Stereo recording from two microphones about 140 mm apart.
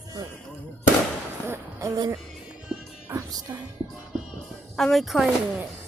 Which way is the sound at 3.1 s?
25° right (ahead or behind).